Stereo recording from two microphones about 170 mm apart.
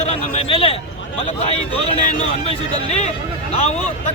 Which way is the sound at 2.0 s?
50° left (ahead or behind).